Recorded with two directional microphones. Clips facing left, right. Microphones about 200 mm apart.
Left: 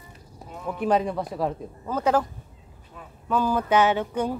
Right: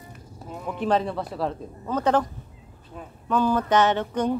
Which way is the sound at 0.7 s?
10° left (ahead or behind).